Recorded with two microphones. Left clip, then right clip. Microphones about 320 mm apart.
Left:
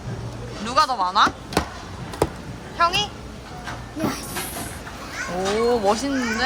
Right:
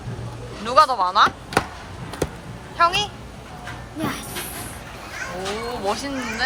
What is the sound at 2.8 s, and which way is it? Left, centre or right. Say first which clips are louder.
Speech: right 1 dB; centre.